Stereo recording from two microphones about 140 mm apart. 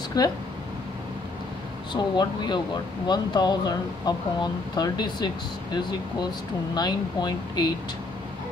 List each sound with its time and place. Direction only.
0.2 s speech: 30° left (ahead or behind)
2.0 s speech: 30° left (ahead or behind)